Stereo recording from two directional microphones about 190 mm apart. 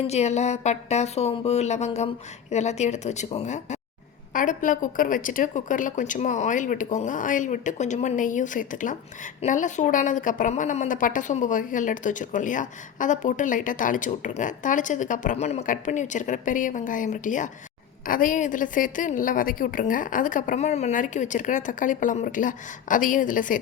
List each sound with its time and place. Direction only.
0.1 s a woman's voice: 35° left (ahead or behind)